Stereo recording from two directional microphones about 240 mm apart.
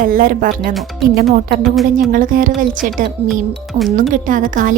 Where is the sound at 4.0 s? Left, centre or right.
Right.